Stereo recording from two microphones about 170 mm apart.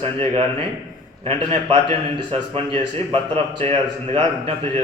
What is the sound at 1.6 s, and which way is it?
A man's voice, 30° right (ahead or behind).